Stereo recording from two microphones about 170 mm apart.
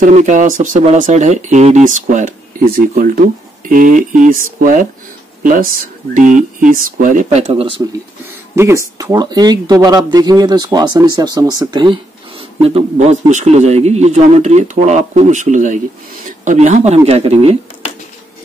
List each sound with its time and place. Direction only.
0.0 s speech: 45° right (ahead or behind)
8.5 s speech: 15° right (ahead or behind)
12.6 s speech: 40° right (ahead or behind)